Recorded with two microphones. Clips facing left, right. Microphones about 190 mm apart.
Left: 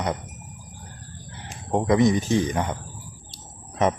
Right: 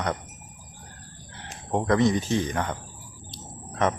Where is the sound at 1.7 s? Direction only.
15° left (ahead or behind).